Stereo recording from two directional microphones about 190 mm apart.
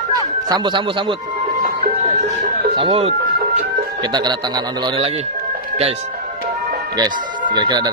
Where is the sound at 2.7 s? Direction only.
30° right (ahead or behind).